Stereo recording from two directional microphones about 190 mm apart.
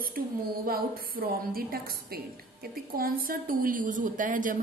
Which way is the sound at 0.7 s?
50° right (ahead or behind).